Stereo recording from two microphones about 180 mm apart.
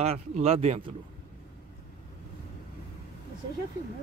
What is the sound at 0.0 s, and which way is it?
Speech, 35° right (ahead or behind).